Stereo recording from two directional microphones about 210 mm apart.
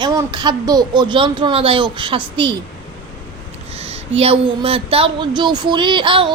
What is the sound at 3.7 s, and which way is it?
A woman's voice, 30° right (ahead or behind).